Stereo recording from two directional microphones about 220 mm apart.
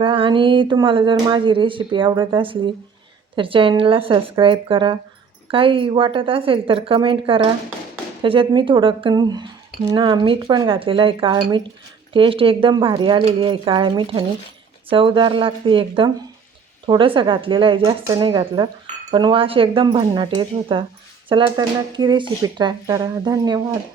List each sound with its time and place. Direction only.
0.0 s speech: 25° right (ahead or behind)